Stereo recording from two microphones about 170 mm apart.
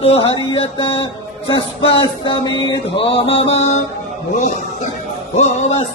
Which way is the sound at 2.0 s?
30° left (ahead or behind).